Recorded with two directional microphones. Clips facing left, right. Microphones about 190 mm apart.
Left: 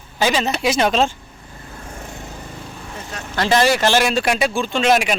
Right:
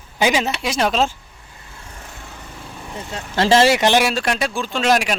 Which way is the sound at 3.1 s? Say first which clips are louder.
Right 3 dB; 25° right (ahead or behind).